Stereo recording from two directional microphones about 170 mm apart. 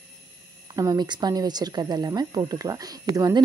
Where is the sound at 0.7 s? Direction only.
20° right (ahead or behind).